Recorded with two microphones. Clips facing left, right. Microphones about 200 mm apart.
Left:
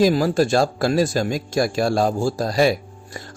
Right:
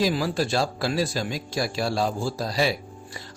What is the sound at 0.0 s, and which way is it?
A man's voice, 45° left (ahead or behind).